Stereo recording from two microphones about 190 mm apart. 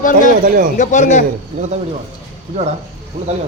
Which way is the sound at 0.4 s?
50° right (ahead or behind).